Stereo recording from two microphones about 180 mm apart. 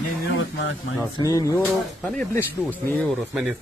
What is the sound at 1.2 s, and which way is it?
Speech, 20° left (ahead or behind).